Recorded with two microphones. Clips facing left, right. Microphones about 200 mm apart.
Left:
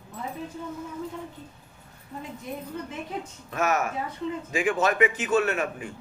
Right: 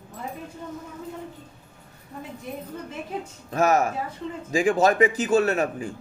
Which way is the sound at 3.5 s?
35° right (ahead or behind).